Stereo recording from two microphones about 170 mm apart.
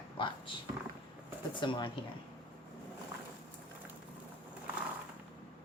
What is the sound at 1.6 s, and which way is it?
Speech, 30° left (ahead or behind).